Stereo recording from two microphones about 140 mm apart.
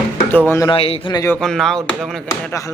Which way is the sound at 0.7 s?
40° left (ahead or behind).